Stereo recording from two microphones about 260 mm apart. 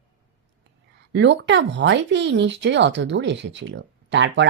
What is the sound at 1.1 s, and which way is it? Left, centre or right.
Speech, right.